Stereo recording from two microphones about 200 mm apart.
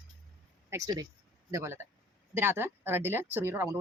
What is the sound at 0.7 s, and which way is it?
Speech, 20° right (ahead or behind).